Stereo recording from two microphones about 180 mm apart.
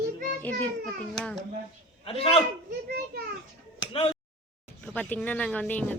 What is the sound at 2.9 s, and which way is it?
Speech, 65° right (ahead or behind).